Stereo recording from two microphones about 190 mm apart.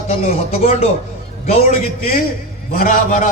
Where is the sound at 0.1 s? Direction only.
35° left (ahead or behind).